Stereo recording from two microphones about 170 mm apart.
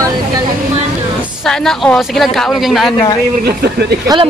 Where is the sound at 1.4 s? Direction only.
Centre (ahead or behind).